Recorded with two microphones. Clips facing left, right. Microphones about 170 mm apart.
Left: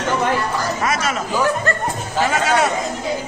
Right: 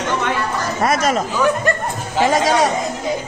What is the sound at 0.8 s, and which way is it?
Speech, 35° right (ahead or behind).